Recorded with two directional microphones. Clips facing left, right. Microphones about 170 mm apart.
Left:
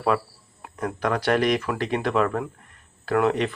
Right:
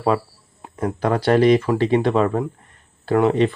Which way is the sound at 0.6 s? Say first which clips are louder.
Right 4 dB; 25° right (ahead or behind).